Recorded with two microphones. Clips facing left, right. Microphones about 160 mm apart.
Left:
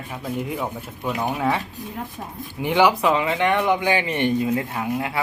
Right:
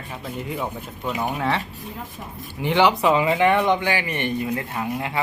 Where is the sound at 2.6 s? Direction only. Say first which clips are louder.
Left 1 dB; 10° left (ahead or behind).